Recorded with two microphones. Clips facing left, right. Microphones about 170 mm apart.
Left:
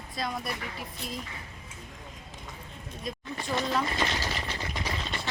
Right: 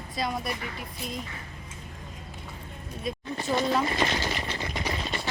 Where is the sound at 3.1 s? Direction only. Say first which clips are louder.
Right 4 dB; 5° right (ahead or behind).